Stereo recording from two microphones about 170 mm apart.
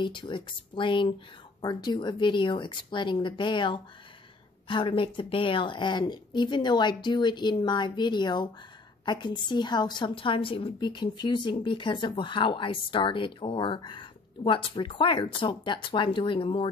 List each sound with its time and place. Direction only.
0.0 s a woman's voice: 30° left (ahead or behind)